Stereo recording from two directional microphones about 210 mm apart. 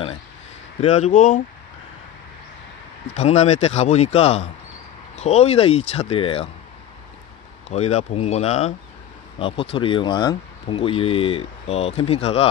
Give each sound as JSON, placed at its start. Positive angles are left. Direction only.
{"t": 0.7, "sound": "a man's voice", "side_deg": 30}
{"t": 3.2, "sound": "a man's voice", "side_deg": 30}
{"t": 7.7, "sound": "a man's voice", "side_deg": 30}